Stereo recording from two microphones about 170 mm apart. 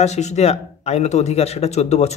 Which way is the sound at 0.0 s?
40° left (ahead or behind).